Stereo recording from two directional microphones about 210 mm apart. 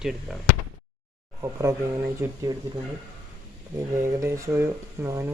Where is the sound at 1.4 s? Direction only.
15° right (ahead or behind).